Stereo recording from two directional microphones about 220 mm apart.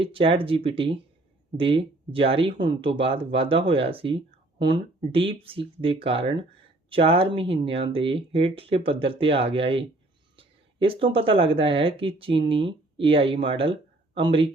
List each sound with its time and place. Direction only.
0.0 s speech: 25° right (ahead or behind)